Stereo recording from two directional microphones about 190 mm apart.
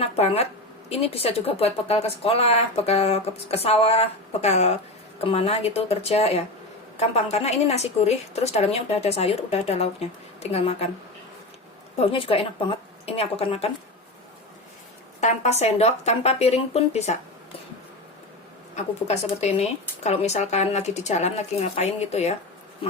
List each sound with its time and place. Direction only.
0.0 s a sound: 30° left (ahead or behind)
0.9 s speech: 30° left (ahead or behind)
11.9 s speech: 30° left (ahead or behind)
15.2 s speech: 35° left (ahead or behind)
18.8 s speech: 35° left (ahead or behind)